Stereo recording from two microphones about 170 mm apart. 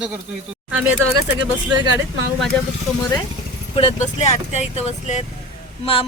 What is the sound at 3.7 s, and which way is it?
Speech, 40° left (ahead or behind).